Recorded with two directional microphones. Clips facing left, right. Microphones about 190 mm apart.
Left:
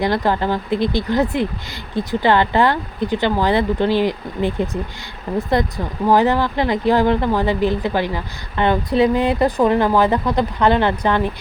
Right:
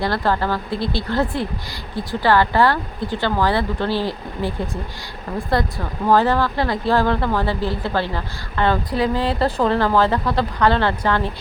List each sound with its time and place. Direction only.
0.0 s speech: 15° left (ahead or behind)